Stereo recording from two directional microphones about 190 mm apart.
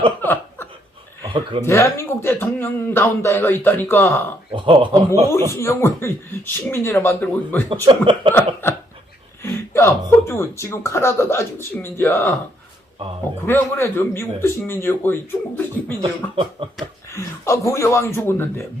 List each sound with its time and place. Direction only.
0.2 s laughter: 10° left (ahead or behind)
1.3 s speech: 25° right (ahead or behind)
1.6 s speech: 15° left (ahead or behind)
4.5 s speech: 25° right (ahead or behind)
5.3 s speech: 15° left (ahead or behind)
7.7 s speech: 25° right (ahead or behind)
9.4 s speech: 15° left (ahead or behind)
13.4 s speech: 10° left (ahead or behind)
16.0 s speech: 30° right (ahead or behind)
17.1 s speech: 15° left (ahead or behind)